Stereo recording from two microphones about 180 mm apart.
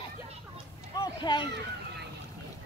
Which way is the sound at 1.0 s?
25° left (ahead or behind).